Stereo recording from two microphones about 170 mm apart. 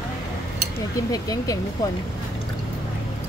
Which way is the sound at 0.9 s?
20° left (ahead or behind).